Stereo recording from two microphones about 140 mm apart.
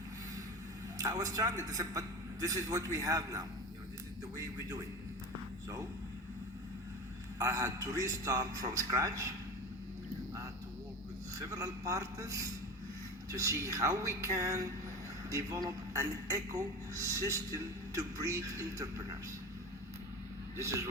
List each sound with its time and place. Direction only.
0.9 s a man's voice: 25° right (ahead or behind)
7.3 s a man's voice: 25° right (ahead or behind)
11.3 s a man's voice: 25° right (ahead or behind)